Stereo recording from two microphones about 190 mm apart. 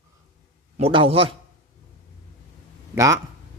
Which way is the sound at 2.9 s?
15° right (ahead or behind).